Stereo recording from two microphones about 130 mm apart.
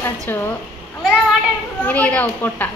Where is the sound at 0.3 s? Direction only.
15° left (ahead or behind).